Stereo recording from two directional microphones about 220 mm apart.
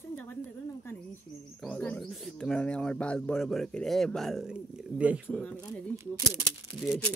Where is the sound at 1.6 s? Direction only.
5° left (ahead or behind).